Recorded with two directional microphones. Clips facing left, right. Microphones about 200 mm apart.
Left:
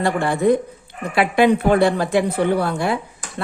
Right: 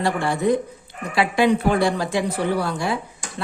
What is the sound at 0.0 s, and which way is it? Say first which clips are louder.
A woman's voice: left 3 dB; 55° left (ahead or behind).